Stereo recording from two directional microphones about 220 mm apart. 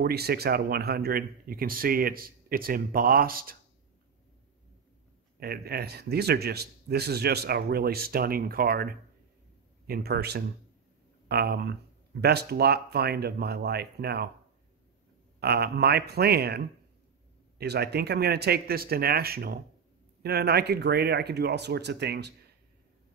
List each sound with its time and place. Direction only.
0.0 s speech: 45° right (ahead or behind)
5.4 s speech: 45° right (ahead or behind)
15.4 s speech: 45° right (ahead or behind)